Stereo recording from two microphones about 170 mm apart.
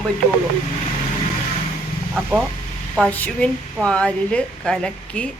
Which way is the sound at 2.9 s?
5° left (ahead or behind).